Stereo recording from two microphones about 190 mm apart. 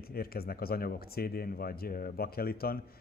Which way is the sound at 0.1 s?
50° left (ahead or behind).